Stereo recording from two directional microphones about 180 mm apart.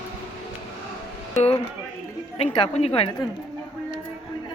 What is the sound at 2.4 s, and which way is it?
Speech, 30° left (ahead or behind).